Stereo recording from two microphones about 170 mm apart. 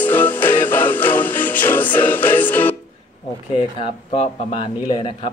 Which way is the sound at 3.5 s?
35° left (ahead or behind).